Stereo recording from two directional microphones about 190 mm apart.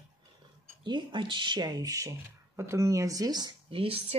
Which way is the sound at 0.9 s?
25° right (ahead or behind).